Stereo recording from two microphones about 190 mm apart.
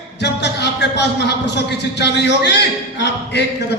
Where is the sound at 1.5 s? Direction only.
65° left (ahead or behind).